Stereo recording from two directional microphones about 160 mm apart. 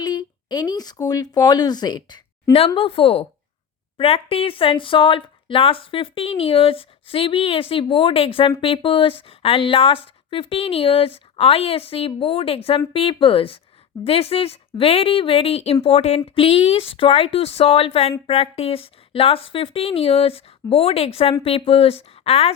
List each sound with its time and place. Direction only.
0.0 s speech: 25° left (ahead or behind)